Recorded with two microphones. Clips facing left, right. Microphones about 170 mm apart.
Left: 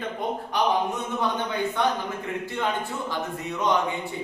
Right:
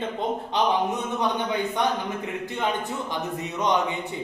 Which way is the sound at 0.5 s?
20° right (ahead or behind).